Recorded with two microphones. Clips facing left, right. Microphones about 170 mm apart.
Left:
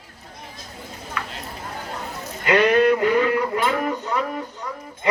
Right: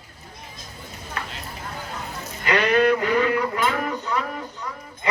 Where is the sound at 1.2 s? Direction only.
35° right (ahead or behind).